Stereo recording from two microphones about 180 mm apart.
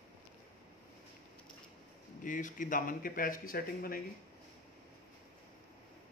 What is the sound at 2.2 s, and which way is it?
Speech, 45° left (ahead or behind).